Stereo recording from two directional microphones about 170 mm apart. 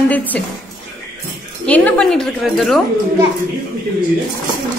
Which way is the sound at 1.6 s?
10° left (ahead or behind).